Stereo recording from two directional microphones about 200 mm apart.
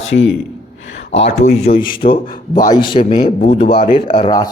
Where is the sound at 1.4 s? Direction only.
35° left (ahead or behind).